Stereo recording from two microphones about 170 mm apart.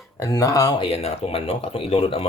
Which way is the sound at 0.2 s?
20° left (ahead or behind).